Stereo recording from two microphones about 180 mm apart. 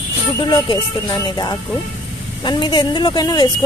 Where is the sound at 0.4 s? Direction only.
25° left (ahead or behind).